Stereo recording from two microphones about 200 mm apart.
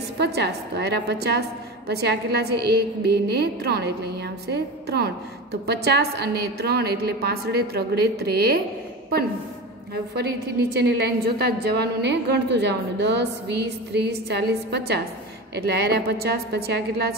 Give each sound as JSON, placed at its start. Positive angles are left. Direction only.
{"t": 0.2, "sound": "a woman's voice", "side_deg": -55}
{"t": 10.8, "sound": "a woman's voice", "side_deg": -55}